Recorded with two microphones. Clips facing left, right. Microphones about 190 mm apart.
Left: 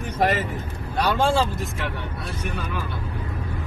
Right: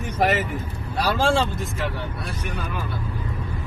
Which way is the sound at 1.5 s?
Centre (ahead or behind).